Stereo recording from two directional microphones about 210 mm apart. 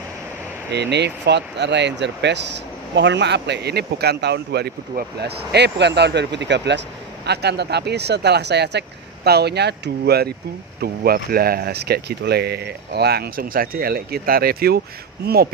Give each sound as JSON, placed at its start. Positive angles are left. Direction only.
{"t": 0.7, "sound": "speech", "side_deg": -55}